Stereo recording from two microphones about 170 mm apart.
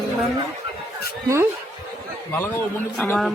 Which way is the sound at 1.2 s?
15° right (ahead or behind).